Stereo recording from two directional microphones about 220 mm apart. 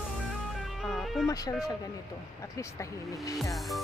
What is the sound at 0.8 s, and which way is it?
Music, centre (ahead or behind).